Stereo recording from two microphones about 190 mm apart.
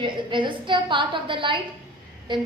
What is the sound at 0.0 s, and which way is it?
A woman's voice, 25° right (ahead or behind).